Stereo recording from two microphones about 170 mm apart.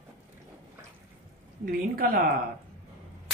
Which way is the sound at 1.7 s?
60° right (ahead or behind).